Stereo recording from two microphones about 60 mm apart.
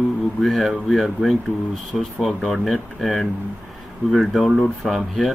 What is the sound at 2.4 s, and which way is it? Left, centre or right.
Speech, centre.